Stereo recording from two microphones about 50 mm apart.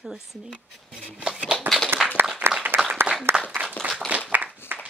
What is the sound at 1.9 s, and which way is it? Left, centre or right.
Applause, right.